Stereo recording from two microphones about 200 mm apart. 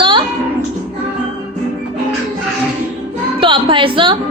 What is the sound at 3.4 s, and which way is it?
Speech, 25° right (ahead or behind).